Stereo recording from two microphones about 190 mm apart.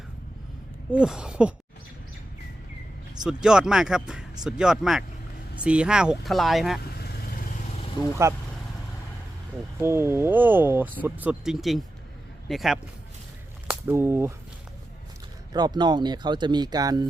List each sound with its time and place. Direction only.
0.9 s speech: 5° right (ahead or behind)
3.2 s speech: 5° right (ahead or behind)
7.0 s vehicle: 55° left (ahead or behind)
8.2 s speech: 15° right (ahead or behind)
9.8 s speech: 15° right (ahead or behind)
13.7 s speech: 10° right (ahead or behind)
15.5 s speech: 20° right (ahead or behind)